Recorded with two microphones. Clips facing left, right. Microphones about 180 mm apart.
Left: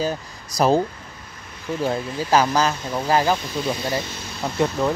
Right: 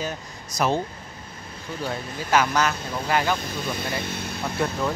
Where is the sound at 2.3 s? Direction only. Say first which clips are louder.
Left 3 dB; 30° left (ahead or behind).